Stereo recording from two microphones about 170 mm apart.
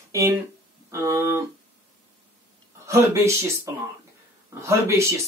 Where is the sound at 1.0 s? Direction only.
15° right (ahead or behind).